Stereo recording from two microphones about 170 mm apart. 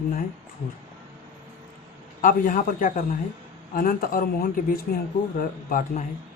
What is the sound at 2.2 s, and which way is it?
Speech, 55° left (ahead or behind).